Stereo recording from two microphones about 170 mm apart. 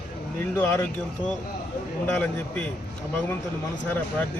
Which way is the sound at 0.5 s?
15° left (ahead or behind).